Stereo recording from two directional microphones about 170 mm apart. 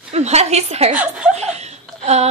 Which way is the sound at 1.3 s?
40° right (ahead or behind).